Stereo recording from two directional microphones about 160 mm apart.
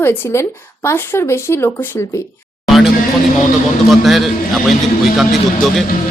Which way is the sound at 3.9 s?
Centre (ahead or behind).